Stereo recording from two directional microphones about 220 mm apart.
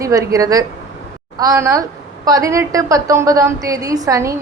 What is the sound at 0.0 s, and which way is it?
A woman's voice, 15° right (ahead or behind).